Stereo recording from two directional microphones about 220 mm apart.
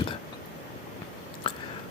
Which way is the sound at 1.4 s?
20° left (ahead or behind).